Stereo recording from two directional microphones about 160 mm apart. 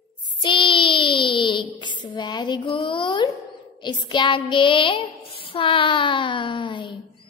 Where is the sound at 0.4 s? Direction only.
30° left (ahead or behind).